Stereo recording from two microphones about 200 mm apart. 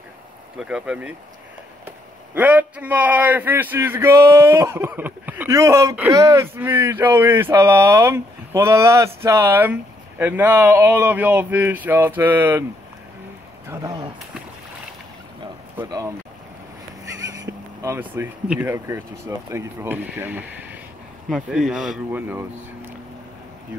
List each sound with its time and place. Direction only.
0.6 s speech: 5° right (ahead or behind)
2.3 s a man's voice: 10° right (ahead or behind)
13.7 s a sound: 15° right (ahead or behind)
15.8 s a man's voice: 15° right (ahead or behind)
17.3 s speech: 15° right (ahead or behind)